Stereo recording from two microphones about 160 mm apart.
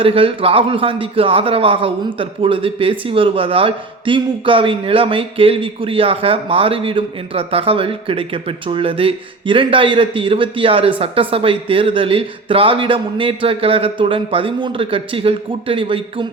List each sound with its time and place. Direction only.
0.0 s a man's voice: 35° right (ahead or behind)